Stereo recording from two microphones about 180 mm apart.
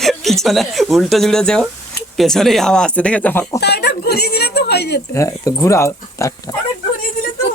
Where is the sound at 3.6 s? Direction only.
65° left (ahead or behind).